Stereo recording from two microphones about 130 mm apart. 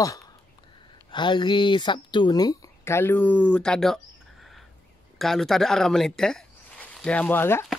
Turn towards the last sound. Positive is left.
turn(degrees=20)  # may be behind; listen again after turning